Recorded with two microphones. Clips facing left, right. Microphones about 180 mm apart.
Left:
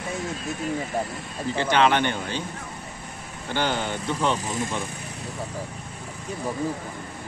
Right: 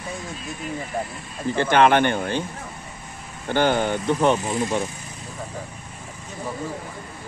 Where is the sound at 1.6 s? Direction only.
50° right (ahead or behind).